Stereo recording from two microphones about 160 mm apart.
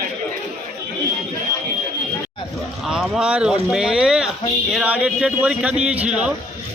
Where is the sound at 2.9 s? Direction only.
5° right (ahead or behind).